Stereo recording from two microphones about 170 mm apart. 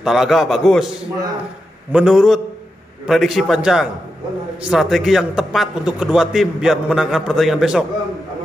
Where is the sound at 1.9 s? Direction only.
5° right (ahead or behind).